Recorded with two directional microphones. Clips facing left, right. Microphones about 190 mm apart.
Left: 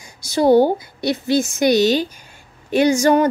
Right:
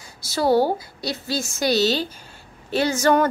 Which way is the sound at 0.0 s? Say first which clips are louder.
Left 6 dB; 20° left (ahead or behind).